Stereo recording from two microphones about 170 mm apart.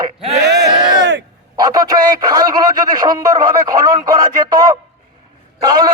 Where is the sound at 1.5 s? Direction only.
20° right (ahead or behind).